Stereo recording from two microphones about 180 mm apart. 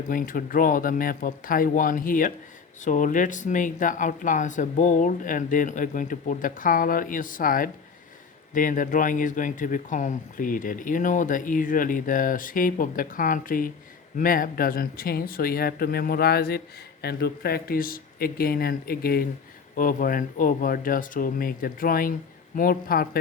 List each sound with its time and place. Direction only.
0.1 s speech: 50° left (ahead or behind)